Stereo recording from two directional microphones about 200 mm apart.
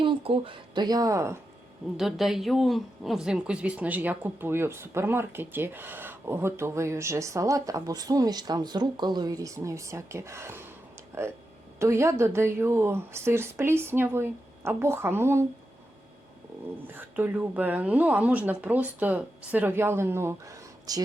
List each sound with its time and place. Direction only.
0.0 s a woman's voice: 25° right (ahead or behind)
2.0 s speech: centre (ahead or behind)
16.8 s speech: 10° right (ahead or behind)